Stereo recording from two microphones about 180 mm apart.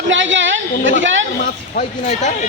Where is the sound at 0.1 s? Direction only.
90° right.